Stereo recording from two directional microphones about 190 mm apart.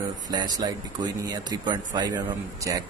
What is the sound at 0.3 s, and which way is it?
A man's voice, 20° right (ahead or behind).